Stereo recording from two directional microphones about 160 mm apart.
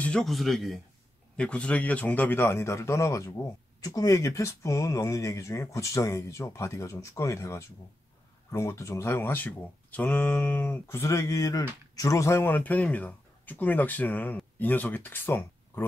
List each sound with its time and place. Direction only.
0.0 s speech: 5° left (ahead or behind)